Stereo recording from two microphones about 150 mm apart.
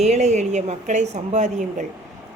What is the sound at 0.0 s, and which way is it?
A woman's voice, 50° right (ahead or behind).